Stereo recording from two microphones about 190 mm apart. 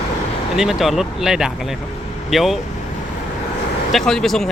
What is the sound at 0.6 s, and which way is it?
Speech, centre (ahead or behind).